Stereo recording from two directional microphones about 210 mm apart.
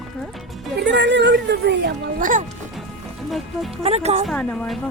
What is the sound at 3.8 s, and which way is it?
Speech, 30° right (ahead or behind).